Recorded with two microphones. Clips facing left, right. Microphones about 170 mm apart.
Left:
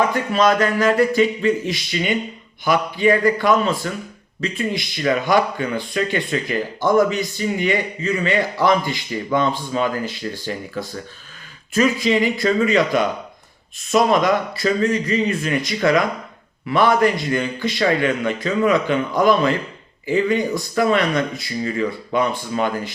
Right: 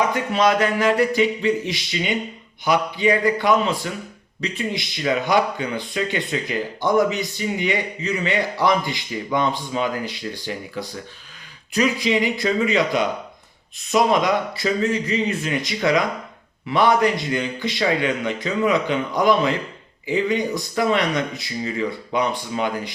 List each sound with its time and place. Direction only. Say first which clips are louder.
0.0 s a man's voice: left 2 dB; 15° right (ahead or behind)
12.0 s a man's voice: left 3 dB; 20° right (ahead or behind)